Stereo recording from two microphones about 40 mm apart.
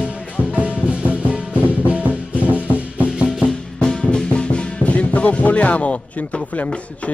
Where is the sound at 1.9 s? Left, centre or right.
Right.